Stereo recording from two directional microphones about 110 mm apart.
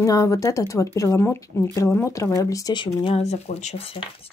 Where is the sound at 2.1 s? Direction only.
30° left (ahead or behind).